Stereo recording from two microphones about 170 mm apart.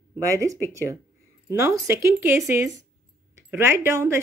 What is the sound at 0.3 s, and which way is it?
Speech, 20° right (ahead or behind).